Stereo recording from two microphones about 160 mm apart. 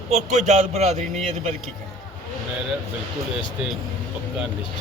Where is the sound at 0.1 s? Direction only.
45° right (ahead or behind).